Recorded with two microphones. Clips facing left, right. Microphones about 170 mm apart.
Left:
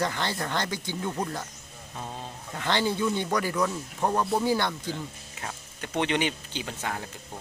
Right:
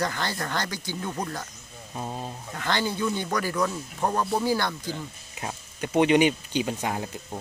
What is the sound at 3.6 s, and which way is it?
Speech, centre (ahead or behind).